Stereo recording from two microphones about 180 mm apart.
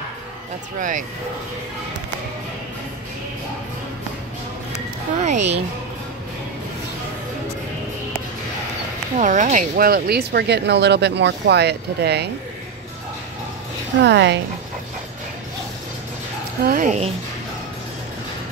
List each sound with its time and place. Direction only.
0.7 s speech: 45° right (ahead or behind)
5.2 s speech: 40° right (ahead or behind)
9.1 s speech: 45° right (ahead or behind); by 12.3 s 65° right (ahead or behind)
14.0 s speech: 75° right (ahead or behind)
16.6 s speech: 45° right (ahead or behind)